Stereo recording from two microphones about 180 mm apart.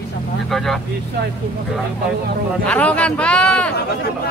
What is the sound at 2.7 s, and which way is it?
Speech, 5° left (ahead or behind).